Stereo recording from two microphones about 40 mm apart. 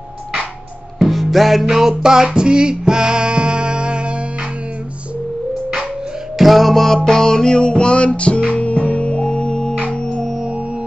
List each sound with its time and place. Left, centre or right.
0.9 s music: centre; by 4.1 s right
6.3 s music: centre
7.1 s music: centre